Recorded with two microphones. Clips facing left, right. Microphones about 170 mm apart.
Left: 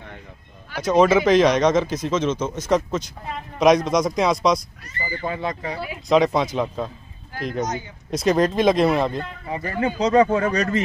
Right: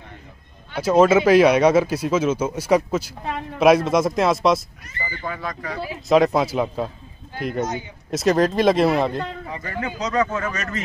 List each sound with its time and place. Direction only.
0.7 s speech: 5° right (ahead or behind)
5.2 s speech: 25° left (ahead or behind)
6.0 s speech: centre (ahead or behind)
9.5 s speech: 30° left (ahead or behind)